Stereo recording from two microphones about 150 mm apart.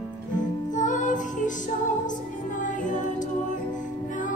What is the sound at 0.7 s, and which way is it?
Music, 55° left (ahead or behind).